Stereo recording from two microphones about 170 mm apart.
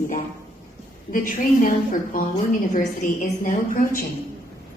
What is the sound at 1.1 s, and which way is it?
Speech, 50° left (ahead or behind).